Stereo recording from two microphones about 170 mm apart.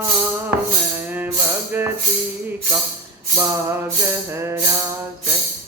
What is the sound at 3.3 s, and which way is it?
Music, 15° right (ahead or behind).